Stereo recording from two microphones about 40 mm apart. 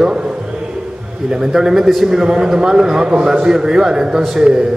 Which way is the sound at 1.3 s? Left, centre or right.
Centre.